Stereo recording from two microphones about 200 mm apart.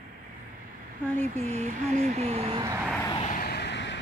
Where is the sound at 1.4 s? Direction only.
35° right (ahead or behind).